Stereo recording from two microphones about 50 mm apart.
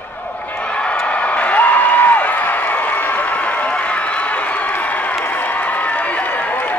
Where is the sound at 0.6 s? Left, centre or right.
Left.